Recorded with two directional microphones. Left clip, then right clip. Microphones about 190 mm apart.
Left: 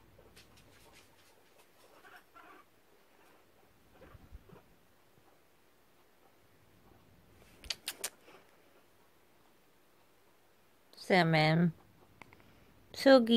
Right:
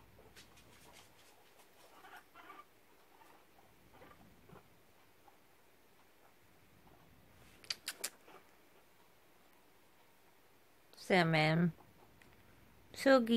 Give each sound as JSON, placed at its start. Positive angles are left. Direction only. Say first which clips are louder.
{"t": 7.6, "sound": "a sound", "louder": "left 3 dB", "side_deg": 20}
{"t": 10.9, "sound": "speech", "louder": "left 3 dB", "side_deg": 15}
{"t": 12.9, "sound": "speech", "louder": "left 5 dB", "side_deg": 20}